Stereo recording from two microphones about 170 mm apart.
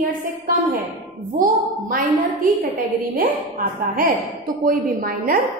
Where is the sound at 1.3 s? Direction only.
55° right (ahead or behind).